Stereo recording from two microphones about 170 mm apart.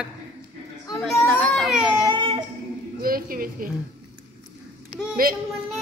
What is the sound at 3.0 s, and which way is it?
Speech, 60° right (ahead or behind).